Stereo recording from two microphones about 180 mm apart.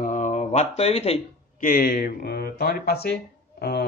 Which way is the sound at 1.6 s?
50° left (ahead or behind).